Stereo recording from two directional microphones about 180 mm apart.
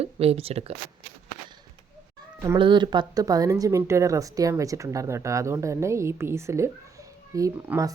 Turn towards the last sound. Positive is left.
turn(degrees=-15)  # may be behind; listen again after turning